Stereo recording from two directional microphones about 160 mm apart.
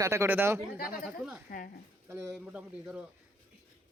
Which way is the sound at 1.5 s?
65° left (ahead or behind).